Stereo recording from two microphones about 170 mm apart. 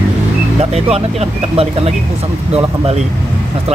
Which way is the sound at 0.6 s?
40° right (ahead or behind).